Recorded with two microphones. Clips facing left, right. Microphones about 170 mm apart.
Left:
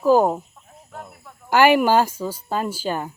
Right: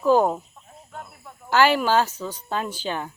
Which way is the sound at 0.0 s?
10° left (ahead or behind).